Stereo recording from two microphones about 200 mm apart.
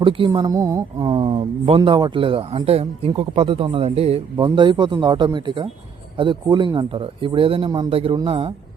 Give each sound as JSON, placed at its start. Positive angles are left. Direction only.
{"t": 0.0, "sound": "speech", "side_deg": -25}